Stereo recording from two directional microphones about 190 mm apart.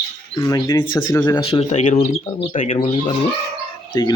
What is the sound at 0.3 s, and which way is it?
Speech, 15° left (ahead or behind).